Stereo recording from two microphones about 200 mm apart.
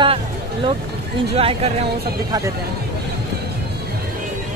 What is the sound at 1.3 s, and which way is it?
Speech, 30° right (ahead or behind).